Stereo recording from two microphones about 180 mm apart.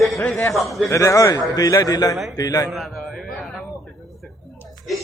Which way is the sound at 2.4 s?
20° left (ahead or behind).